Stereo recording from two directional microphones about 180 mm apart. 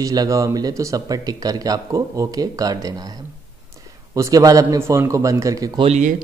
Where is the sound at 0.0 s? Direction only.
20° right (ahead or behind).